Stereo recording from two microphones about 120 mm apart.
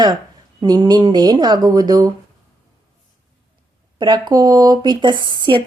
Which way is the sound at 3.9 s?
40° right (ahead or behind).